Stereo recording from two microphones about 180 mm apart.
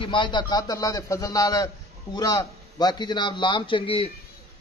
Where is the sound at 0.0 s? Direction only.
25° left (ahead or behind).